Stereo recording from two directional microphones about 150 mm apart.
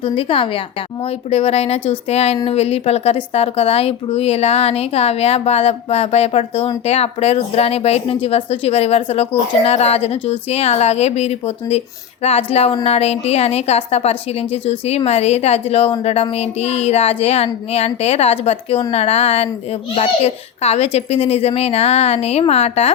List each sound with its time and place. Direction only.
0.0 s a woman's voice: 35° left (ahead or behind)